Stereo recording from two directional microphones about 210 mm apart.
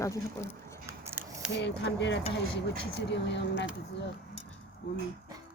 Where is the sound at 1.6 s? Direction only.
55° left (ahead or behind).